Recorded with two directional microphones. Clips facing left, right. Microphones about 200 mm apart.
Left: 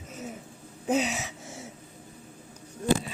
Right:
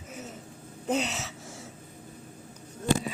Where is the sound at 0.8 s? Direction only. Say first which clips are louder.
Left 2 dB; 10° left (ahead or behind).